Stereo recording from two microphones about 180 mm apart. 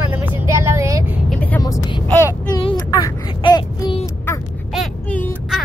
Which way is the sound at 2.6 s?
25° left (ahead or behind).